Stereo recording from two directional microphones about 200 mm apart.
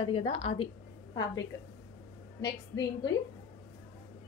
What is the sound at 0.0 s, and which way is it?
Speech, 30° left (ahead or behind).